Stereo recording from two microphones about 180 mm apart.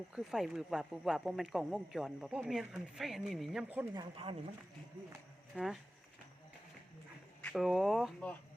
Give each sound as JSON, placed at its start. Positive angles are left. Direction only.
{"t": 0.1, "sound": "speech", "side_deg": -5}
{"t": 3.9, "sound": "speech", "side_deg": -30}
{"t": 5.5, "sound": "speech", "side_deg": 0}
{"t": 7.4, "sound": "speech", "side_deg": 0}